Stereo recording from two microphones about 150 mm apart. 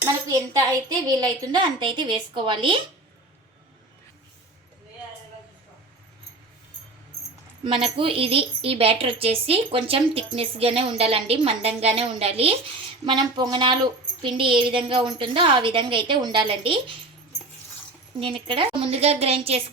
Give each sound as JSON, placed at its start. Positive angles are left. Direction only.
{"t": 0.3, "sound": "speech", "side_deg": -25}
{"t": 7.6, "sound": "speech", "side_deg": -35}
{"t": 13.1, "sound": "a sound", "side_deg": -30}
{"t": 14.2, "sound": "speech", "side_deg": -35}
{"t": 18.2, "sound": "speech", "side_deg": -35}